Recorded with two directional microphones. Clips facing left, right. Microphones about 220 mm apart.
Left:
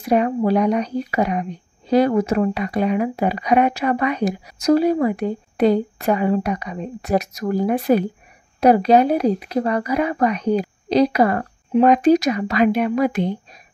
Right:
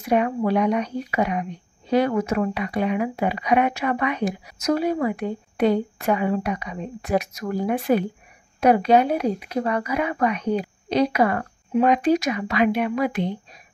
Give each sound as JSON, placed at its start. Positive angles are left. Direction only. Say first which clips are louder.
{"t": 0.1, "sound": "speech", "louder": "left 3 dB", "side_deg": 35}